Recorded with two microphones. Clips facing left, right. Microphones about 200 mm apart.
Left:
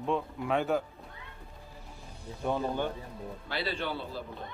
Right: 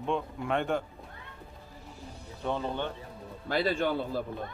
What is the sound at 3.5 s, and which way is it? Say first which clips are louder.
Speech: right 7 dB; 45° right (ahead or behind).